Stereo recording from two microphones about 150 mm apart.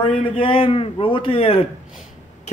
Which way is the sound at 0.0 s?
35° left (ahead or behind).